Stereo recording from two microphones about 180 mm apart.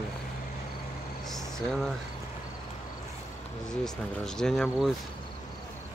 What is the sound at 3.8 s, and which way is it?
Speech, 5° left (ahead or behind).